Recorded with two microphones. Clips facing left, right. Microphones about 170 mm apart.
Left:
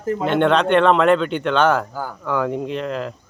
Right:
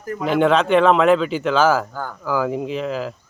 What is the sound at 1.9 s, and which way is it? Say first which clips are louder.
Speech: left 1 dB; 10° left (ahead or behind).